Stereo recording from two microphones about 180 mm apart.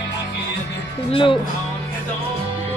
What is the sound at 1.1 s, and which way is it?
Speech, 30° left (ahead or behind).